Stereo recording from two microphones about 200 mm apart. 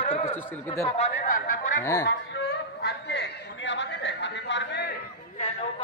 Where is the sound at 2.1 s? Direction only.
55° left (ahead or behind).